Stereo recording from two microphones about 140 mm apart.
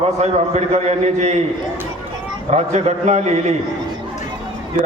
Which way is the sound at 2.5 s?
50° right (ahead or behind).